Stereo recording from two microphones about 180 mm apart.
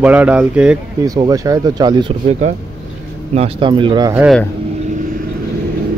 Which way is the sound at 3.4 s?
30° right (ahead or behind).